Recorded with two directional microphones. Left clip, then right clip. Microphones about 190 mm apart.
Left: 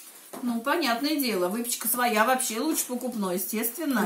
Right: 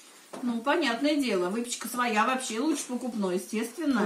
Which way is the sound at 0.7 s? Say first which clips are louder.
Even; 20° left (ahead or behind).